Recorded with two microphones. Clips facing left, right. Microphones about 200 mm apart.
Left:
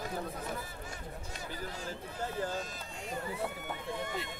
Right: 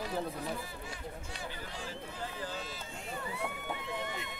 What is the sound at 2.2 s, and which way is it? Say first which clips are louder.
Speech: left 6 dB; 45° left (ahead or behind).